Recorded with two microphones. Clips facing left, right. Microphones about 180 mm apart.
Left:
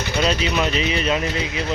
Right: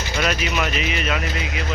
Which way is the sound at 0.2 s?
30° left (ahead or behind).